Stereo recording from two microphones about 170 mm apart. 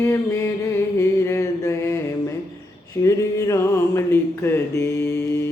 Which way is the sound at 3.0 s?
20° left (ahead or behind).